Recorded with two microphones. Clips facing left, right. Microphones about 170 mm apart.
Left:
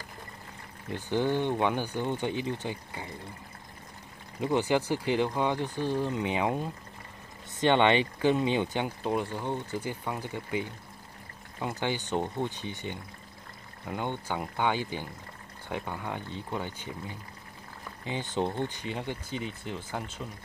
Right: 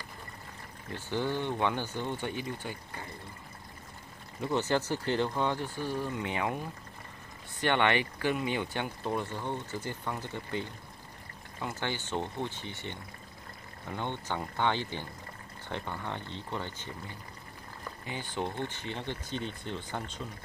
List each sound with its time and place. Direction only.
0.8 s speech: 15° left (ahead or behind)
4.4 s speech: 15° left (ahead or behind)
18.0 s speech: 20° left (ahead or behind)